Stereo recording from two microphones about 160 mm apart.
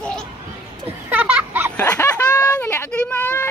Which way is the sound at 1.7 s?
10° left (ahead or behind).